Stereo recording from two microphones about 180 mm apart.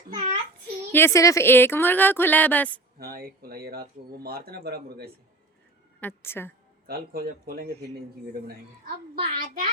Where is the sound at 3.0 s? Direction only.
55° right (ahead or behind).